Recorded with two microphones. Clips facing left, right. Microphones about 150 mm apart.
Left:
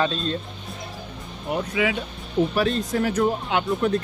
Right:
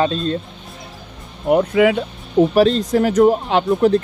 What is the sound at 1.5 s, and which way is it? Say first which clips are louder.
Speech: right 10 dB; 55° right (ahead or behind).